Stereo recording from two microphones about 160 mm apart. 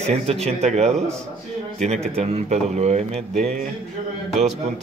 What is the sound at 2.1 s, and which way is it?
A man's voice, 40° right (ahead or behind).